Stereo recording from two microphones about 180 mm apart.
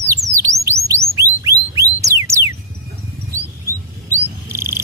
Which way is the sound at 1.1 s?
15° right (ahead or behind).